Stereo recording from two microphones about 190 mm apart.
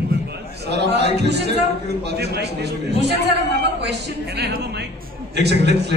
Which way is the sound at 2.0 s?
60° right (ahead or behind).